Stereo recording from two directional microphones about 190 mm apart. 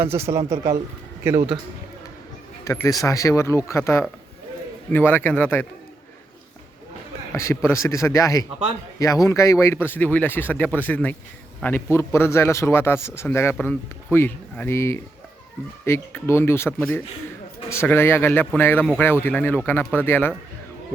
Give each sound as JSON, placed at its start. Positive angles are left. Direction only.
{"t": 0.0, "sound": "a man's voice", "side_deg": -15}
{"t": 2.6, "sound": "a man's voice", "side_deg": 15}
{"t": 7.3, "sound": "a man's voice", "side_deg": 15}